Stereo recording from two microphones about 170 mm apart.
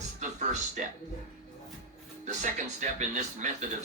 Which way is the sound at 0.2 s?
45° right (ahead or behind).